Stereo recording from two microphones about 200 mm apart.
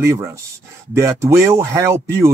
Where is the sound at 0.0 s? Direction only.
15° right (ahead or behind).